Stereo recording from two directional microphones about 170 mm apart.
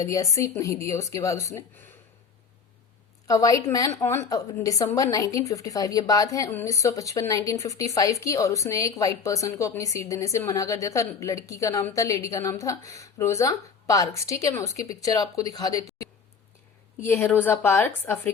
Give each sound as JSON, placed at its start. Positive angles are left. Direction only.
{"t": 0.0, "sound": "a woman's voice", "side_deg": 20}
{"t": 3.2, "sound": "a woman's voice", "side_deg": 20}
{"t": 17.0, "sound": "a woman's voice", "side_deg": 15}